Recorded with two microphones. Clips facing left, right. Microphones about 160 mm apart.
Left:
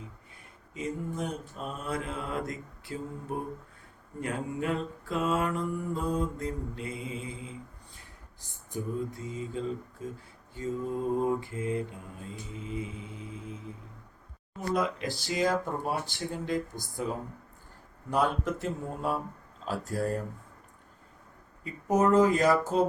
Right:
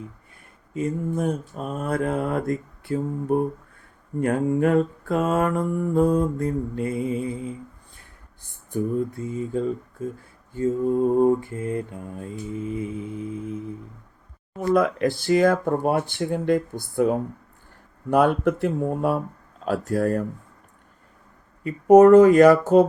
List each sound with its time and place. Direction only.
0.7 s mantra: 50° right (ahead or behind)
14.7 s speech: 55° right (ahead or behind)
21.6 s speech: 65° right (ahead or behind)